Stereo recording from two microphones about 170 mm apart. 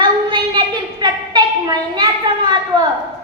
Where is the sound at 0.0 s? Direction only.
25° right (ahead or behind).